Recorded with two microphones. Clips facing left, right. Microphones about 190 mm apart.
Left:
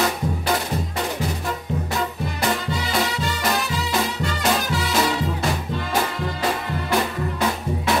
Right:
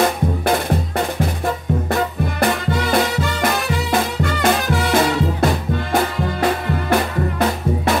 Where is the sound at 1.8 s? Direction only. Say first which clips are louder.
Right 6 dB; 55° right (ahead or behind).